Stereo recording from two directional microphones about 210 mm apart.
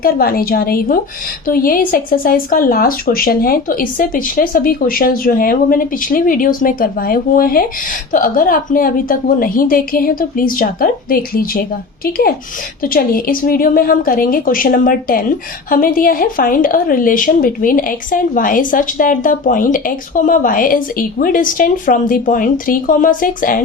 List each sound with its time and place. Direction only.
0.0 s a woman's voice: 45° left (ahead or behind)